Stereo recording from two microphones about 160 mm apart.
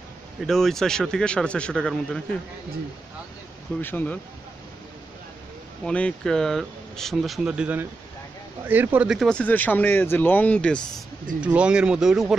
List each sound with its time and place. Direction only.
0.5 s speech: centre (ahead or behind)
3.8 s speech: 10° left (ahead or behind)
5.9 s speech: 5° left (ahead or behind)
11.4 s speech: 5° right (ahead or behind)